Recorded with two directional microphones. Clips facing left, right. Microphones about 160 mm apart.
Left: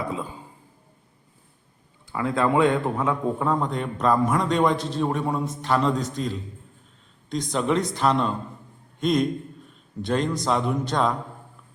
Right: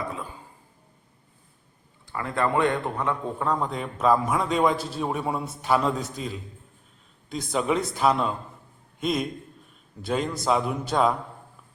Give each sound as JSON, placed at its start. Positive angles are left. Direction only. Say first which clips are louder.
{"t": 2.1, "sound": "a man's voice", "louder": "left 3 dB", "side_deg": 10}